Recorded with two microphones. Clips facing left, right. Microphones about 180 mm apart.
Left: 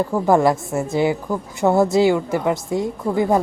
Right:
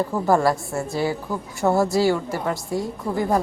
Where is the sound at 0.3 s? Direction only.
20° left (ahead or behind).